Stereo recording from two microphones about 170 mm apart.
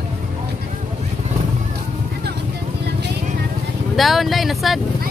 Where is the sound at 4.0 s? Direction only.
Centre (ahead or behind).